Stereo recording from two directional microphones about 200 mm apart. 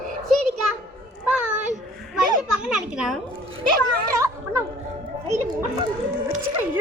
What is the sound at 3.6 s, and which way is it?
Speech, 45° right (ahead or behind).